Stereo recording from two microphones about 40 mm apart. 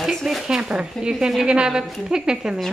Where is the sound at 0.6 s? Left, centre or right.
Right.